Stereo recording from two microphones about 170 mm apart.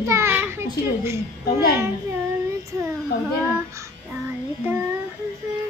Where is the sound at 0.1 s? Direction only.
15° right (ahead or behind).